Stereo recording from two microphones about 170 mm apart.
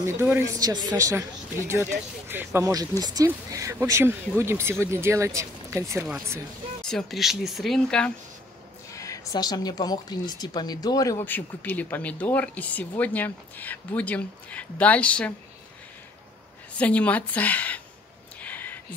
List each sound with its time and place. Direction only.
0.0 s speech: 15° right (ahead or behind)
6.8 s speech: 5° left (ahead or behind)
8.9 s speech: 20° left (ahead or behind)
16.7 s speech: 10° left (ahead or behind)
18.4 s a sound: 10° left (ahead or behind)